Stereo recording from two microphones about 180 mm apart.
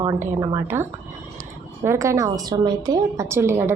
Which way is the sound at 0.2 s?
15° right (ahead or behind).